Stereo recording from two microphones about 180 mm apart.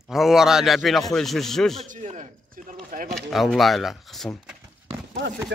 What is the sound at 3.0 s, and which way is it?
Speech, centre (ahead or behind).